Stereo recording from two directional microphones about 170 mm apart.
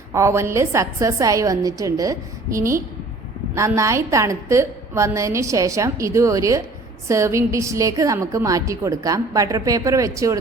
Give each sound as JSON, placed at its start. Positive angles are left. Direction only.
{"t": 0.1, "sound": "a woman's voice", "side_deg": -15}